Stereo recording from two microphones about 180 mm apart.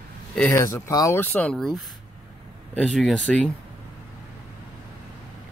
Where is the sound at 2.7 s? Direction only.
Centre (ahead or behind).